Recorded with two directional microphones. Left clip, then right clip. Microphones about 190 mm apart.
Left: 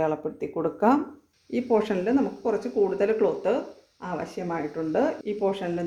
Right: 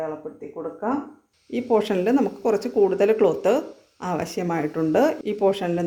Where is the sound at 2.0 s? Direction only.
30° right (ahead or behind).